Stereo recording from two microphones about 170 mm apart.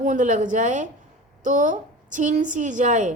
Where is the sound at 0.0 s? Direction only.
50° right (ahead or behind).